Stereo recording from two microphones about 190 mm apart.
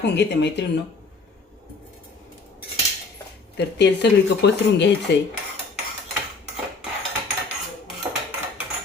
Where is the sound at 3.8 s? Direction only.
65° left (ahead or behind).